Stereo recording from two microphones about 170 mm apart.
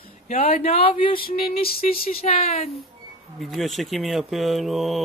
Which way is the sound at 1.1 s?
60° left (ahead or behind).